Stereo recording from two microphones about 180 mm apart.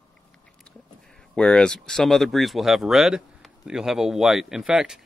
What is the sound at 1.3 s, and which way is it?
Speech, 5° left (ahead or behind).